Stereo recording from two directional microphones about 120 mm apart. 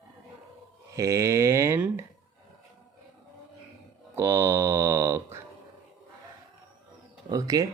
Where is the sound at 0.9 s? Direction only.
25° right (ahead or behind).